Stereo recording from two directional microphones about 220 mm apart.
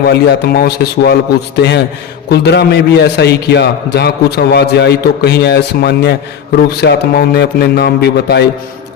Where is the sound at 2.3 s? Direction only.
50° left (ahead or behind).